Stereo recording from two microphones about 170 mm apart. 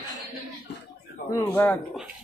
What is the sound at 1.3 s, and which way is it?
Speech, 10° left (ahead or behind).